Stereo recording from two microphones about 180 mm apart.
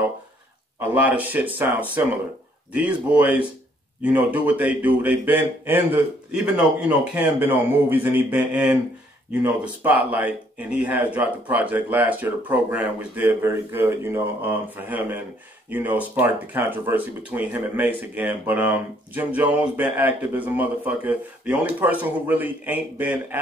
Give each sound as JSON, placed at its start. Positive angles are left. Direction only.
{"t": 1.1, "sound": "speech", "side_deg": -10}
{"t": 9.8, "sound": "speech", "side_deg": -10}